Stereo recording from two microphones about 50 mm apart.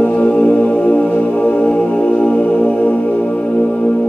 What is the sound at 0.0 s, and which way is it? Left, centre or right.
Music, left.